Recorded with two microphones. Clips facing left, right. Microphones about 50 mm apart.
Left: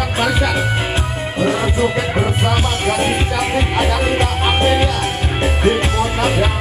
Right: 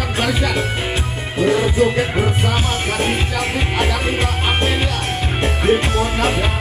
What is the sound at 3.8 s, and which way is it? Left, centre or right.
Music, centre.